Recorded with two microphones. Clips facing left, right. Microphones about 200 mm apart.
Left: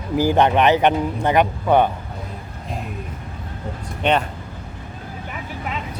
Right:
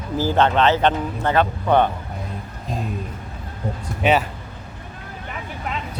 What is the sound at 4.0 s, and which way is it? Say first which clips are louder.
Speech: right 1 dB; 5° right (ahead or behind).